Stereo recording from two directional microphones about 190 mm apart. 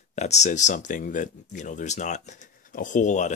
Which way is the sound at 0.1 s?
35° left (ahead or behind).